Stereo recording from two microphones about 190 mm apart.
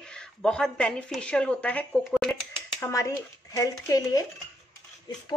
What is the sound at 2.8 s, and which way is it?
Speech, 15° left (ahead or behind).